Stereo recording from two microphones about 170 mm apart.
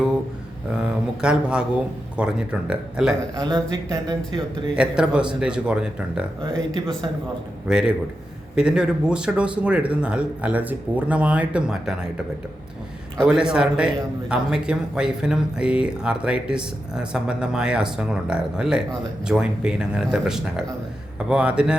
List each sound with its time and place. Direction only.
0.7 s a man's voice: 5° right (ahead or behind)
3.3 s speech: 25° right (ahead or behind)
4.8 s a man's voice: 5° right (ahead or behind)
7.7 s a man's voice: 5° right (ahead or behind)